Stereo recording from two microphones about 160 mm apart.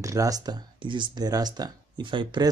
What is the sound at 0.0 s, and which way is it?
Speech, 20° right (ahead or behind).